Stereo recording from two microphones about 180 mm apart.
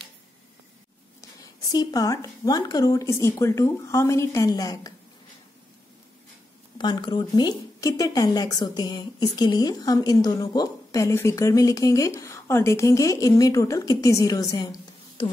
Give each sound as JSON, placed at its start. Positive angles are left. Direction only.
{"t": 1.4, "sound": "a woman's voice", "side_deg": 20}
{"t": 6.8, "sound": "a woman's voice", "side_deg": 25}